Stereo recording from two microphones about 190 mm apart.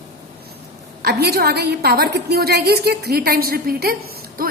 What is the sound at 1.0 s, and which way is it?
A woman's voice, 60° right (ahead or behind).